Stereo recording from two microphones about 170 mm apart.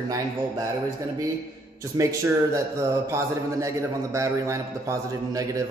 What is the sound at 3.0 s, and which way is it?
A man's voice, 15° right (ahead or behind).